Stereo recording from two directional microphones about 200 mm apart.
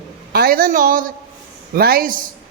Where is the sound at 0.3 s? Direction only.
45° right (ahead or behind).